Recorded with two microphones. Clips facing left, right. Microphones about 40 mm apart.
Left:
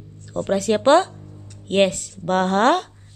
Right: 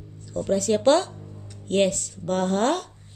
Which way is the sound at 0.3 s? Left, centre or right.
Left.